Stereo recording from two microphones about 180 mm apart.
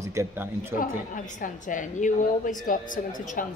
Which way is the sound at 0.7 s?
50° left (ahead or behind).